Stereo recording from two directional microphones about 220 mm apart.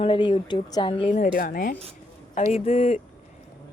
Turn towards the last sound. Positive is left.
turn(degrees=30)  # may be behind; listen again after turning